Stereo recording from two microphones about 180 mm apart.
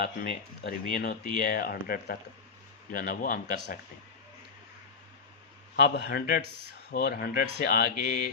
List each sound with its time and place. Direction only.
0.0 s speech: 60° left (ahead or behind)
5.7 s speech: 65° left (ahead or behind)